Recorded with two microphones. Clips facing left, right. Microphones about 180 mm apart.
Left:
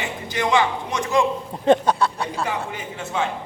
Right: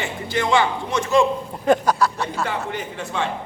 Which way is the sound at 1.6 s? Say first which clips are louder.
Left 1 dB; 25° left (ahead or behind).